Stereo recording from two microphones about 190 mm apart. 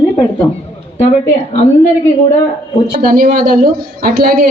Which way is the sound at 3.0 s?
50° right (ahead or behind).